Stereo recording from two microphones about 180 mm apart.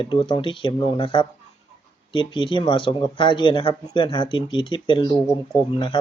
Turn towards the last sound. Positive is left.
turn(degrees=25)  # may be behind; listen again after turning